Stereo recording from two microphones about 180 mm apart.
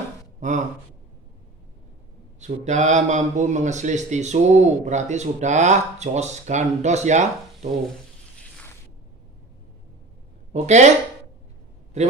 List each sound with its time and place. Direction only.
2.4 s a man's voice: 40° right (ahead or behind)
10.5 s speech: 40° right (ahead or behind)